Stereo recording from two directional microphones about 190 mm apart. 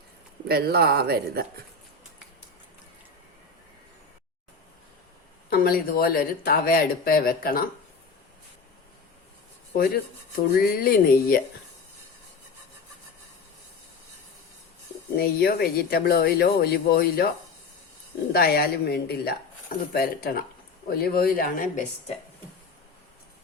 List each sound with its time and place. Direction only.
0.4 s speech: 55° right (ahead or behind)
5.5 s speech: 50° left (ahead or behind)
9.7 s speech: 50° left (ahead or behind)
15.1 s speech: 55° left (ahead or behind)